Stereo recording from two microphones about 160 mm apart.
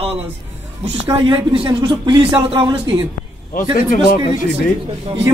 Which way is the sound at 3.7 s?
55° left (ahead or behind).